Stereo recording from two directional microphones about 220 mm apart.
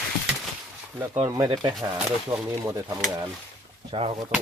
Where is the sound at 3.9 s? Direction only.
25° right (ahead or behind).